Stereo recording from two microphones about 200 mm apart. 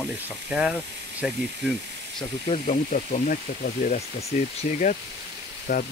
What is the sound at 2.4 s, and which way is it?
Speech, 35° left (ahead or behind).